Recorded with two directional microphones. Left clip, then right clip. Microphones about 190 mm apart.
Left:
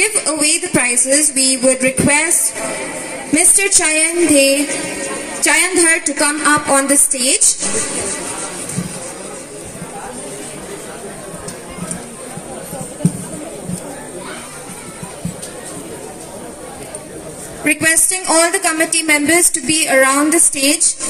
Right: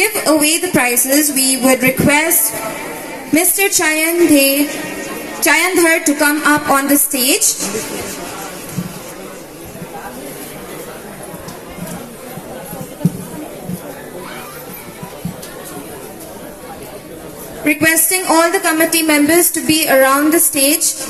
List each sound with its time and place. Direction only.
0.0 s speech: 20° left (ahead or behind)
3.5 s speech: 20° left (ahead or behind)
17.6 s a woman's voice: 65° left (ahead or behind); by 20.9 s 45° left (ahead or behind)